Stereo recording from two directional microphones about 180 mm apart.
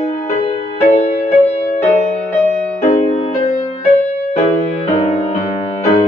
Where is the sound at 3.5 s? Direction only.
20° left (ahead or behind).